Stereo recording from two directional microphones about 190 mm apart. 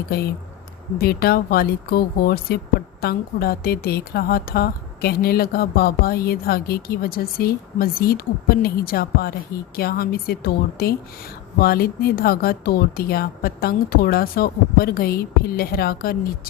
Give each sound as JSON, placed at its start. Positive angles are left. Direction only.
{"t": 0.1, "sound": "a woman's voice", "side_deg": 55}